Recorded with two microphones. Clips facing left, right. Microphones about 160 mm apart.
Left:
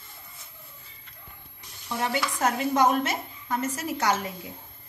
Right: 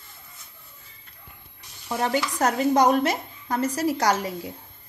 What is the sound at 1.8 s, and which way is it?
A woman's voice, 40° right (ahead or behind).